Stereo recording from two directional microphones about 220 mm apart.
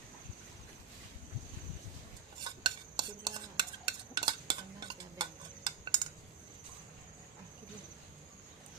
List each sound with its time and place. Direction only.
2.4 s stir: 20° right (ahead or behind)
4.1 s cutlery: 20° right (ahead or behind)